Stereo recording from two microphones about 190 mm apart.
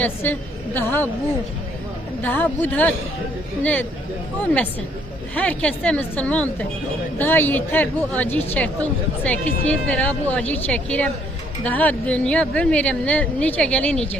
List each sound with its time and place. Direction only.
0.0 s a woman's voice: 10° left (ahead or behind)
2.2 s speech: 10° left (ahead or behind)